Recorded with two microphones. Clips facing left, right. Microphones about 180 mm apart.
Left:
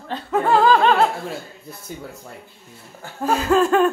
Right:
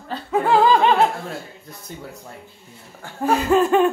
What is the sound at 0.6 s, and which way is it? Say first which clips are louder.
Laughter: even; 20° right (ahead or behind).